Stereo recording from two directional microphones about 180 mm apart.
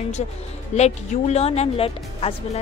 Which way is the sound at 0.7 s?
35° left (ahead or behind).